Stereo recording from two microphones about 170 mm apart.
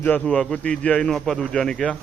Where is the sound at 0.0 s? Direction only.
5° left (ahead or behind).